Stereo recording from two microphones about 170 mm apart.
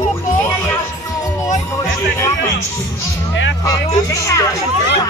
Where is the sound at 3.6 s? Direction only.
20° left (ahead or behind).